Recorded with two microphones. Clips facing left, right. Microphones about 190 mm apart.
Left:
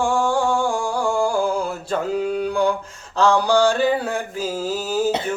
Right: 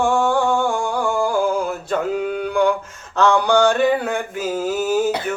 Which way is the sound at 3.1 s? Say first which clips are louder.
Right 1 dB; 30° left (ahead or behind).